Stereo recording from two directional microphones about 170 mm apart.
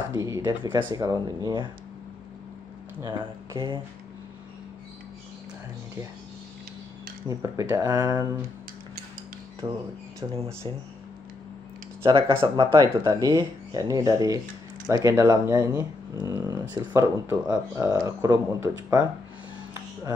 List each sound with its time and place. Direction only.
0.1 s speech: 20° right (ahead or behind)
3.0 s speech: 30° right (ahead or behind)
7.2 s speech: 20° right (ahead or behind)
9.6 s speech: 20° right (ahead or behind)
12.4 s speech: 25° right (ahead or behind)
16.3 s a sound: 25° right (ahead or behind)
16.7 s speech: 15° right (ahead or behind)